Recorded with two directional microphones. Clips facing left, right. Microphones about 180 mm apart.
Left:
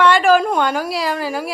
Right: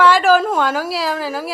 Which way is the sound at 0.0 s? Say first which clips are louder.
Even; centre (ahead or behind).